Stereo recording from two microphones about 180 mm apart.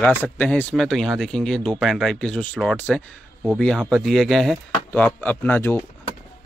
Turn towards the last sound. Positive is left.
turn(degrees=10)  # may be behind; listen again after turning